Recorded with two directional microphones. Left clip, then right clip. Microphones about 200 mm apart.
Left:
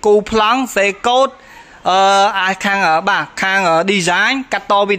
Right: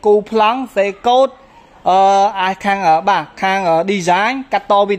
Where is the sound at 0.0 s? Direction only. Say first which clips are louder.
Even; centre (ahead or behind).